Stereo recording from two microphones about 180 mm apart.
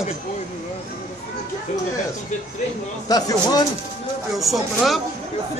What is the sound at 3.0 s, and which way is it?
Speech, 20° left (ahead or behind).